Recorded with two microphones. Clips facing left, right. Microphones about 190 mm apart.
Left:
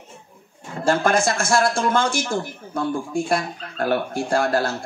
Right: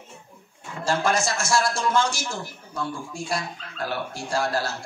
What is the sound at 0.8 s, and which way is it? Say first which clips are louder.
A woman's voice: left 5 dB; 55° left (ahead or behind).